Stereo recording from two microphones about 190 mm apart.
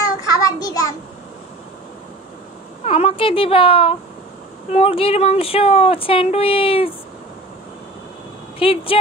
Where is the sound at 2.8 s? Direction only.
30° left (ahead or behind).